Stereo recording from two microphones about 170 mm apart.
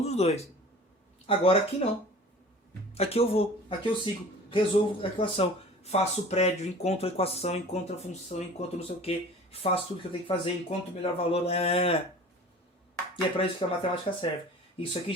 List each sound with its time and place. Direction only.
0.0 s speech: 40° left (ahead or behind)
13.3 s speech: 30° left (ahead or behind)